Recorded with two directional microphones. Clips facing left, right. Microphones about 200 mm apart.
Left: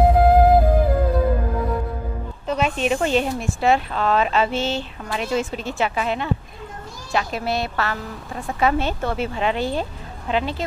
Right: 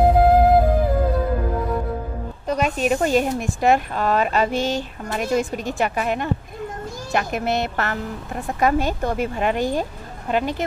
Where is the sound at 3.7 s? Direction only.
45° right (ahead or behind).